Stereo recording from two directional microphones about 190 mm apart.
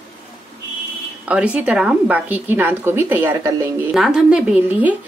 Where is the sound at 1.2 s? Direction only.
5° right (ahead or behind).